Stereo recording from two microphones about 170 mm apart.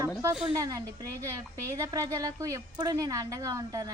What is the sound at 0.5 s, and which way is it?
Speech, 20° right (ahead or behind).